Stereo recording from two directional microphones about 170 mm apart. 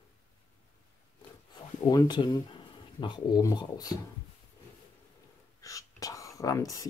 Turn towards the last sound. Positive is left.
turn(degrees=20)  # may be behind; listen again after turning